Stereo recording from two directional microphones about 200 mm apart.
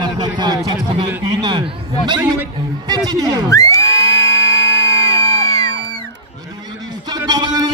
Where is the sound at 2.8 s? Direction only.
20° right (ahead or behind).